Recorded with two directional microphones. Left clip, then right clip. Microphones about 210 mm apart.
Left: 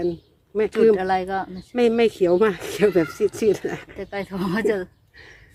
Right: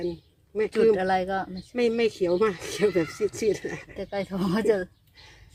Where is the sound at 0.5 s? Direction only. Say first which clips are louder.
Left 5 dB; 35° left (ahead or behind).